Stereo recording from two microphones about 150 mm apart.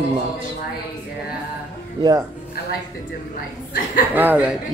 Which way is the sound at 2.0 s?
25° right (ahead or behind).